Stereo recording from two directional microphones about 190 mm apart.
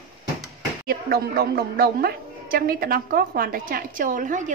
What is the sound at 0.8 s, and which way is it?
A woman's voice, 55° right (ahead or behind).